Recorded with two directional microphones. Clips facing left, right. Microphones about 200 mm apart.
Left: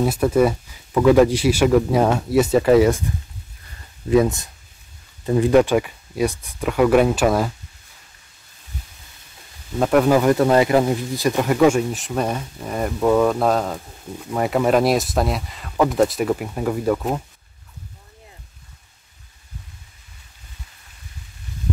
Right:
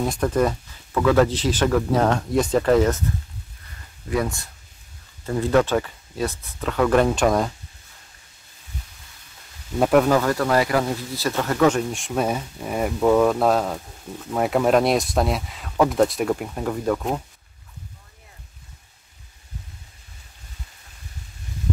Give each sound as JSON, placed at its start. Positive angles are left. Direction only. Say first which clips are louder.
{"t": 0.0, "sound": "speech", "louder": "left 4 dB", "side_deg": 5}
{"t": 4.1, "sound": "speech", "louder": "left 8 dB", "side_deg": 20}
{"t": 9.8, "sound": "speech", "louder": "even", "side_deg": 0}
{"t": 10.0, "sound": "speech", "louder": "left 4 dB", "side_deg": 15}